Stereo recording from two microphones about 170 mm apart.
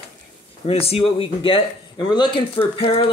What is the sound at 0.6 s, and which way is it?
Speech, 35° left (ahead or behind).